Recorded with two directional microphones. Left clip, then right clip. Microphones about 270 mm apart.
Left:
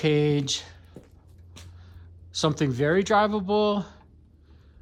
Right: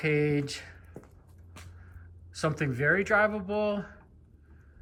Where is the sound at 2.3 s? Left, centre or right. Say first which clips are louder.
Left 5 dB; centre.